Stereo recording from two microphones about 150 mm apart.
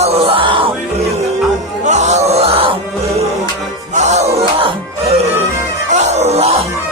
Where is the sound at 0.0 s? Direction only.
40° right (ahead or behind).